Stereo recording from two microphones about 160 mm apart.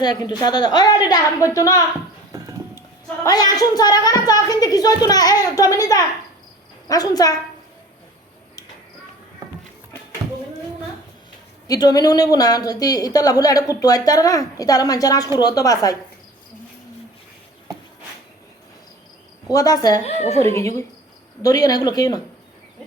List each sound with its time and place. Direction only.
0.0 s speech: 25° left (ahead or behind)
3.2 s speech: 25° left (ahead or behind)
11.7 s speech: 25° left (ahead or behind)
19.5 s speech: 25° left (ahead or behind)
20.1 s speech: 45° left (ahead or behind)
20.4 s speech: 20° left (ahead or behind)